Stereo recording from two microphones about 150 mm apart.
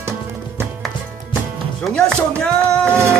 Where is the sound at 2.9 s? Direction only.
15° right (ahead or behind).